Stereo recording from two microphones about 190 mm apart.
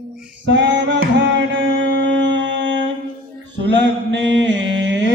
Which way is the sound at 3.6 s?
70° right (ahead or behind).